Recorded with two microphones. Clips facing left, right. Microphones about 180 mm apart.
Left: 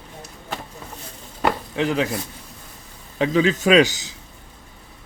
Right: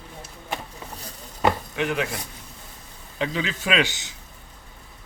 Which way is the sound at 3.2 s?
40° left (ahead or behind).